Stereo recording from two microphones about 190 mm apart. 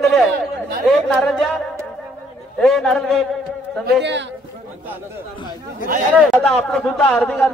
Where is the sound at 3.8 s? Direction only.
65° right (ahead or behind).